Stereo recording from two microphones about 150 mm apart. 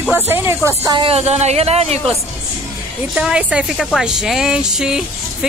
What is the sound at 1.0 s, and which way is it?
Speech, 45° right (ahead or behind).